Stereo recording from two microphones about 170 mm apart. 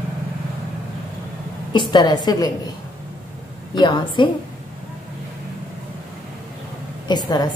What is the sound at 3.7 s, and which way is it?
Speech, 25° left (ahead or behind).